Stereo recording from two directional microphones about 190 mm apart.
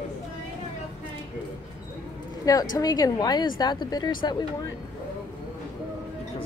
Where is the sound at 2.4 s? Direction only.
20° left (ahead or behind).